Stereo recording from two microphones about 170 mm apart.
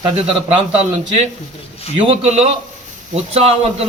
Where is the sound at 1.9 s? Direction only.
35° right (ahead or behind).